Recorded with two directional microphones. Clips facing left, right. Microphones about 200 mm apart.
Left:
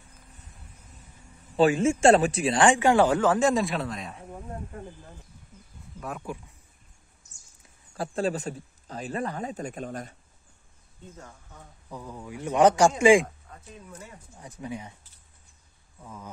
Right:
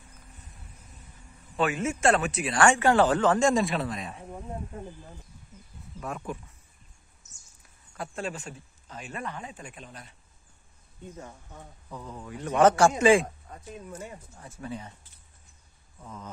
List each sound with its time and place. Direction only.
1.6 s speech: 30° left (ahead or behind); by 4.4 s centre (ahead or behind)
5.9 s speech: centre (ahead or behind)
7.9 s speech: 35° left (ahead or behind)
11.9 s speech: 10° left (ahead or behind)
14.3 s speech: 15° left (ahead or behind)
16.0 s speech: 10° left (ahead or behind)